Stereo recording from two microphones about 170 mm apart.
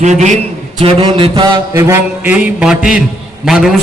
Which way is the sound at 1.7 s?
15° right (ahead or behind).